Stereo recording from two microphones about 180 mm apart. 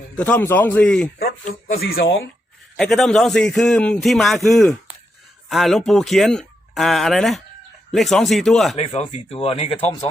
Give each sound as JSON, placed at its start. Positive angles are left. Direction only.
{"t": 0.2, "sound": "a man's voice", "side_deg": 10}
{"t": 1.2, "sound": "speech", "side_deg": 55}
{"t": 2.7, "sound": "a man's voice", "side_deg": 0}
{"t": 8.7, "sound": "speech", "side_deg": 35}